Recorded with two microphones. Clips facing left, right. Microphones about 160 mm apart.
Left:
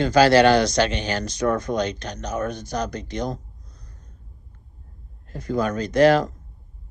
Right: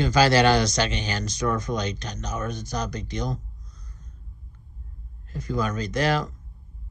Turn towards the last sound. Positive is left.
turn(degrees=60)  # may be behind; listen again after turning